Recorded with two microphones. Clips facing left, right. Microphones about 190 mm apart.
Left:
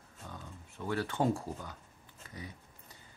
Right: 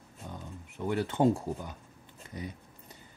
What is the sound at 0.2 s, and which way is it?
Speech, 20° right (ahead or behind).